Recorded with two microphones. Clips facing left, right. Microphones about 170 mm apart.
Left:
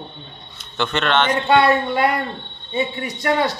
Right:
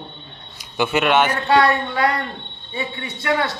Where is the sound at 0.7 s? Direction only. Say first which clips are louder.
Right 2 dB; 10° right (ahead or behind).